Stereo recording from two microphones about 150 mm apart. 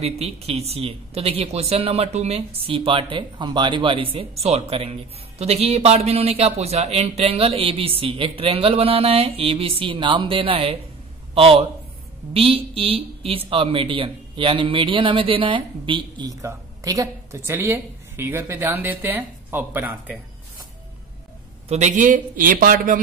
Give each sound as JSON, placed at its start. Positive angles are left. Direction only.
{"t": 0.0, "sound": "speech", "side_deg": -45}
{"t": 21.6, "sound": "a man's voice", "side_deg": -50}